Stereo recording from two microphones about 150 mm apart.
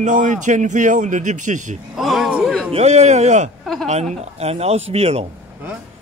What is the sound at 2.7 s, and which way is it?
Speech, 45° right (ahead or behind).